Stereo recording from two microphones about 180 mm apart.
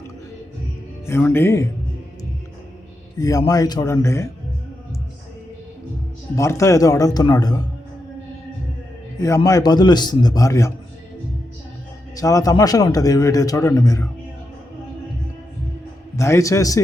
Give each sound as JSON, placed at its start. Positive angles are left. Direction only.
{"t": 1.0, "sound": "speech", "side_deg": 10}
{"t": 3.2, "sound": "a man's voice", "side_deg": 20}
{"t": 6.3, "sound": "a man's voice", "side_deg": 15}
{"t": 9.2, "sound": "a man's voice", "side_deg": 20}
{"t": 12.1, "sound": "a man's voice", "side_deg": 20}
{"t": 16.1, "sound": "speech", "side_deg": 15}